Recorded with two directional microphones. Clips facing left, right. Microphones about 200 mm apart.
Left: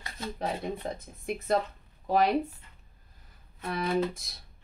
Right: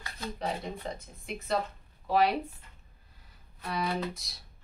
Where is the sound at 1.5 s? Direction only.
50° left (ahead or behind).